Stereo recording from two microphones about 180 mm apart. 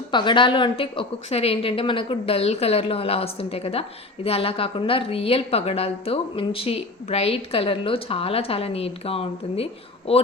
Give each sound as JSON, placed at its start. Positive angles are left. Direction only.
{"t": 0.1, "sound": "a woman's voice", "side_deg": 25}